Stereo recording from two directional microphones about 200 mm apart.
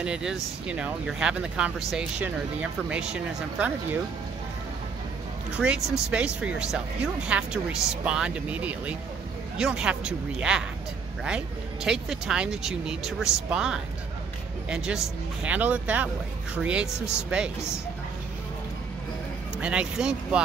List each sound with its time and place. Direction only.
0.0 s speech: 5° right (ahead or behind)
5.6 s speech: 5° right (ahead or behind)
15.4 s speech: 5° right (ahead or behind)
19.6 s speech: 5° right (ahead or behind)